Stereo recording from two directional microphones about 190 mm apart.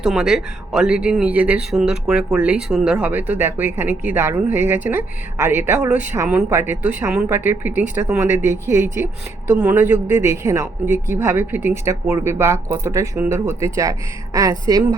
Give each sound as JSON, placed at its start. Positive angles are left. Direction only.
{"t": 0.0, "sound": "speech", "side_deg": 0}